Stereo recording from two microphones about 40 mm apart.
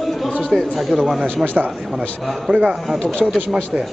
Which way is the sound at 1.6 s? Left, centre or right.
Right.